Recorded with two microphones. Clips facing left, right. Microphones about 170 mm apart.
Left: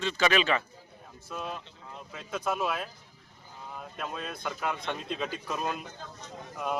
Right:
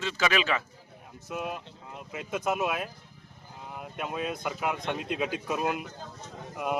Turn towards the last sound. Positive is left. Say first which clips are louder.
# right 2 dB
turn(degrees=-10)  # may be behind; listen again after turning